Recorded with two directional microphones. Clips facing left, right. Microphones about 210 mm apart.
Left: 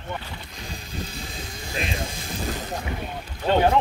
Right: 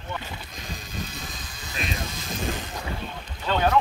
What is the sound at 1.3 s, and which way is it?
Vehicle, 25° left (ahead or behind).